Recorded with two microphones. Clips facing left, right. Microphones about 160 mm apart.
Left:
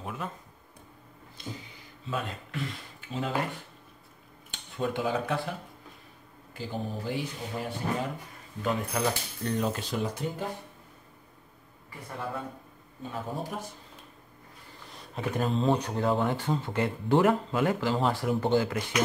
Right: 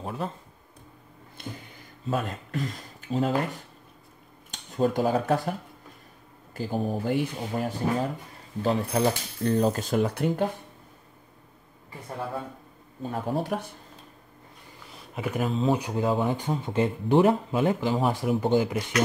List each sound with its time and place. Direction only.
0.0 s a sound: 35° right (ahead or behind)
1.4 s a sound: 60° right (ahead or behind)
2.0 s speech: 45° right (ahead or behind)
8.6 s speech: 35° right (ahead or behind); by 10.4 s 65° right (ahead or behind)
13.1 s speech: 65° right (ahead or behind)
15.1 s speech: 10° right (ahead or behind)